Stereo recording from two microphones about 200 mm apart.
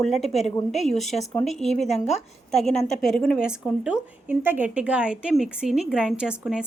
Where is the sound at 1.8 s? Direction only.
35° left (ahead or behind).